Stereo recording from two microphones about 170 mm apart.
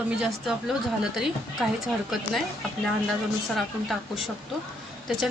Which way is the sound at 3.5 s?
Centre (ahead or behind).